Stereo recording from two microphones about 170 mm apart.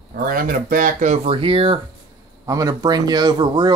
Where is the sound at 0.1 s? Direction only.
60° right (ahead or behind); by 1.8 s 30° right (ahead or behind).